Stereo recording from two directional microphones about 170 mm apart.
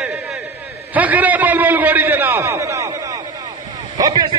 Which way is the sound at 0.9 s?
10° right (ahead or behind).